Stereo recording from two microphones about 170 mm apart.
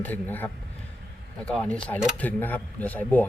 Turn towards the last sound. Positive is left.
turn(degrees=10)  # may be behind; listen again after turning